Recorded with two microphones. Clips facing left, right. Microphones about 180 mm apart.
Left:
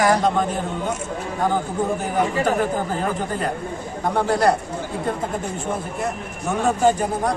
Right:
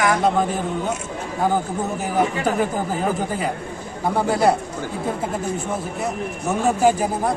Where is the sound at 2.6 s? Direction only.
5° right (ahead or behind).